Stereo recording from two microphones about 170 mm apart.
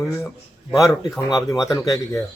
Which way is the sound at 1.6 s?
20° left (ahead or behind).